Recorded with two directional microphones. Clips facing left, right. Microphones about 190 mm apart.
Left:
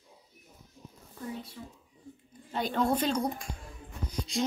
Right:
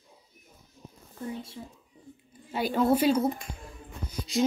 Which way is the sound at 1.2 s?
25° right (ahead or behind).